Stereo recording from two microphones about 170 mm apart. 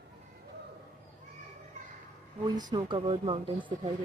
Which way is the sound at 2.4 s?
25° right (ahead or behind).